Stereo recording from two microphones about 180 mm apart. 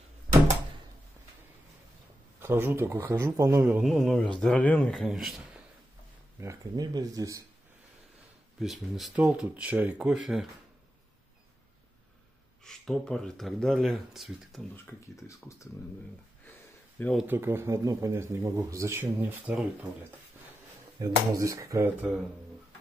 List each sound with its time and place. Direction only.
2.4 s speech: 15° right (ahead or behind)
6.4 s speech: 20° right (ahead or behind)
8.5 s speech: centre (ahead or behind)
12.6 s speech: centre (ahead or behind)
14.9 s speech: 15° left (ahead or behind)
17.0 s speech: centre (ahead or behind)
17.3 s speech: 10° right (ahead or behind)
19.0 s speech: 5° right (ahead or behind)
21.0 s speech: 15° right (ahead or behind)